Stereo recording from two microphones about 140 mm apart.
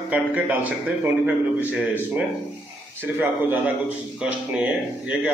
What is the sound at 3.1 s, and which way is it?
Speech, 10° right (ahead or behind).